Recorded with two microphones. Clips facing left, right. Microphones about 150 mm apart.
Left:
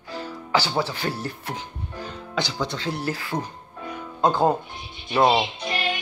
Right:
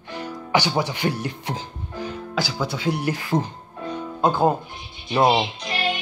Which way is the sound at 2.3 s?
5° right (ahead or behind).